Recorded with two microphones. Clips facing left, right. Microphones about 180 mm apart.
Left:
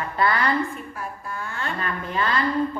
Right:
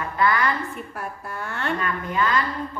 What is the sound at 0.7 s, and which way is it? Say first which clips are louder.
A woman's voice: right 1 dB; 65° right (ahead or behind).